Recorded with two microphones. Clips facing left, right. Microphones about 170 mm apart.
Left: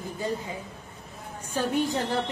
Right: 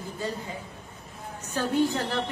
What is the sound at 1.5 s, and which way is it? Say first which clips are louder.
Speech: right 1 dB; 15° left (ahead or behind).